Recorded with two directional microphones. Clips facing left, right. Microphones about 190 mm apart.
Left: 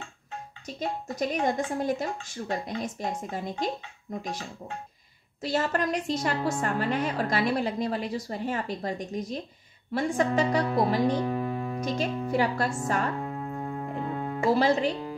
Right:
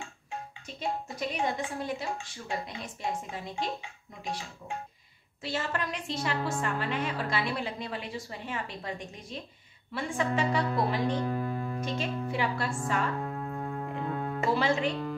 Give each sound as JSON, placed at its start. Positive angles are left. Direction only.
{"t": 0.7, "sound": "speech", "side_deg": 40}
{"t": 5.4, "sound": "a woman's voice", "side_deg": 40}
{"t": 11.1, "sound": "music", "side_deg": 15}
{"t": 11.8, "sound": "music", "side_deg": 40}
{"t": 13.2, "sound": "music", "side_deg": 10}
{"t": 14.5, "sound": "a woman's voice", "side_deg": 40}